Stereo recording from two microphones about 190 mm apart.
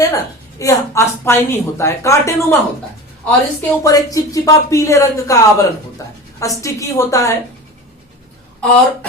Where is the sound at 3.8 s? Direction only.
20° left (ahead or behind).